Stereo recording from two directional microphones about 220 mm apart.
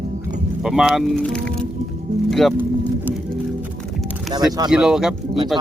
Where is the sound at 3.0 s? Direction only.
Centre (ahead or behind).